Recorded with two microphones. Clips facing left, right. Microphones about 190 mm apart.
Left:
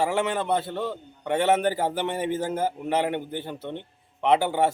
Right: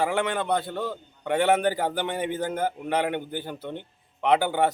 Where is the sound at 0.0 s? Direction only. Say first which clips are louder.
Left 1 dB; 5° left (ahead or behind).